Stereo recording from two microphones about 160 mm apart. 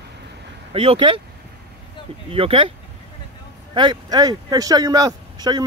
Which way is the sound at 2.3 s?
35° right (ahead or behind).